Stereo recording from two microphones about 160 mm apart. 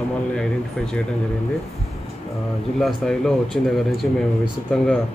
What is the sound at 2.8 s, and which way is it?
A man's voice, 5° left (ahead or behind).